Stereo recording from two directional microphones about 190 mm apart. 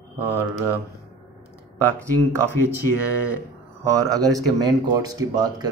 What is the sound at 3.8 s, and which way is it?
Speech, 20° right (ahead or behind).